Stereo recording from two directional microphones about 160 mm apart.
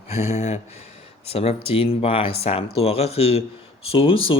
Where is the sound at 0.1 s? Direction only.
40° left (ahead or behind).